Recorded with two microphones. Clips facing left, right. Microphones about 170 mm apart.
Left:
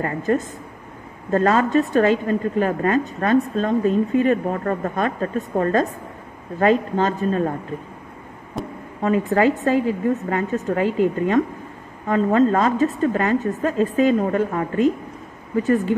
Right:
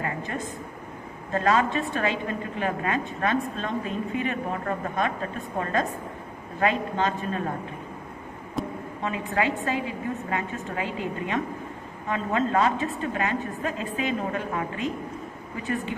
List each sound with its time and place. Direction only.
0.0 s a woman's voice: 45° left (ahead or behind)
8.6 s a sound: centre (ahead or behind)
9.0 s a woman's voice: 45° left (ahead or behind)